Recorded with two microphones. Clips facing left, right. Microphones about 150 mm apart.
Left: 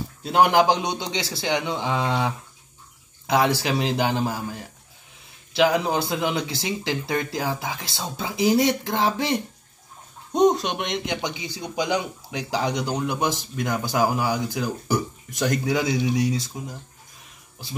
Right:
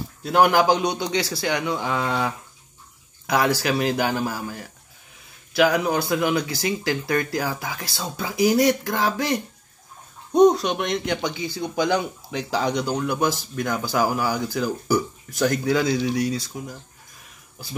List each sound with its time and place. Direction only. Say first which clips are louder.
0.2 s speech: even; 20° left (ahead or behind)